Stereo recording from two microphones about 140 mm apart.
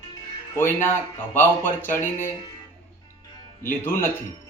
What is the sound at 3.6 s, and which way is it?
Speech, 15° left (ahead or behind).